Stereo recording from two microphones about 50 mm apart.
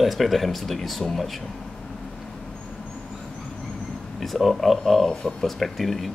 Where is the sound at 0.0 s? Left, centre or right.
Centre.